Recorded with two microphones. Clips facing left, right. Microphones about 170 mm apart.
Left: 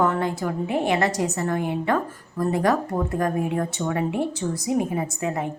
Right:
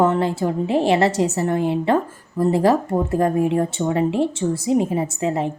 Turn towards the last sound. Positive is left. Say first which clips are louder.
# right 5 dB
turn(degrees=-25)  # may be behind; listen again after turning